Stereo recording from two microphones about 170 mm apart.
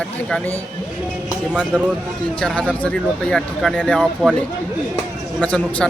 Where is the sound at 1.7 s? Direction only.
5° left (ahead or behind).